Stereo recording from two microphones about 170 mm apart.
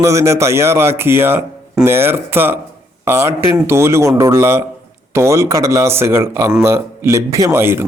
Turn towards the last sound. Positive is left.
turn(degrees=-15)  # may be behind; listen again after turning